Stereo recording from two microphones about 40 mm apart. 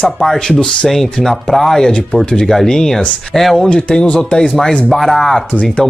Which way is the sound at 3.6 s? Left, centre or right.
Left.